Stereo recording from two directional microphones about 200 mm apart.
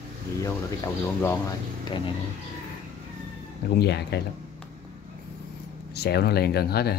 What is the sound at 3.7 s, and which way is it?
Speech, 55° left (ahead or behind).